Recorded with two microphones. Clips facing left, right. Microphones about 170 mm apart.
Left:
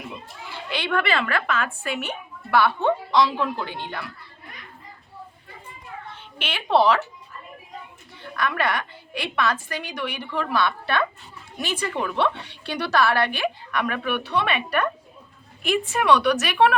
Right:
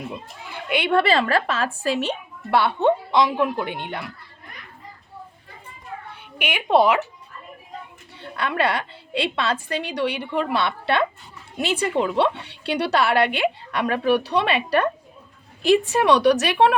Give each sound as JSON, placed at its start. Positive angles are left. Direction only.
{"t": 0.7, "sound": "a woman's voice", "side_deg": -25}
{"t": 6.4, "sound": "a woman's voice", "side_deg": -15}
{"t": 8.2, "sound": "a woman's voice", "side_deg": -25}